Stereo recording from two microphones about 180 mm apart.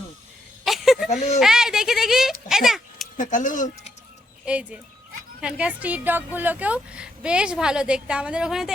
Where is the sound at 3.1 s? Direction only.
45° left (ahead or behind).